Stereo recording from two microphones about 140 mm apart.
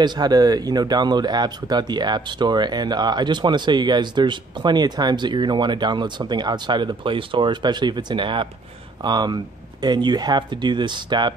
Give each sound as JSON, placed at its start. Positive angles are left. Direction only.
{"t": 0.0, "sound": "speech", "side_deg": -30}